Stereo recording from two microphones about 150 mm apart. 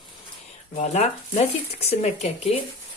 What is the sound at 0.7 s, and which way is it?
Speech, 50° left (ahead or behind).